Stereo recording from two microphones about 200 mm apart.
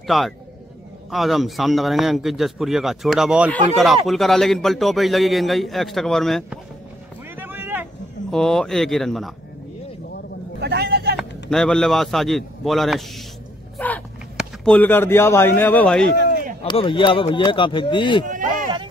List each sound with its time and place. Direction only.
0.0 s a man's voice: centre (ahead or behind)
7.3 s a sound: 10° right (ahead or behind)
8.3 s a man's voice: 5° left (ahead or behind)
10.6 s vehicle: 55° right (ahead or behind)
11.5 s a man's voice: 5° left (ahead or behind)
13.7 s a sound: 10° left (ahead or behind)
14.3 s speech: centre (ahead or behind)
16.6 s speech: 25° left (ahead or behind)
18.3 s a sound: 40° right (ahead or behind)